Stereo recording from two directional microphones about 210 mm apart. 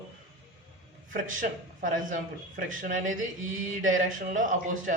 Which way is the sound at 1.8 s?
40° right (ahead or behind).